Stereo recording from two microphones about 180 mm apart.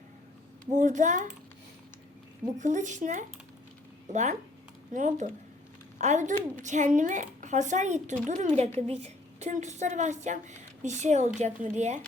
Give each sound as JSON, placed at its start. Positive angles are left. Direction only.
{"t": 0.6, "sound": "speech", "side_deg": -45}
{"t": 2.6, "sound": "a woman's voice", "side_deg": -45}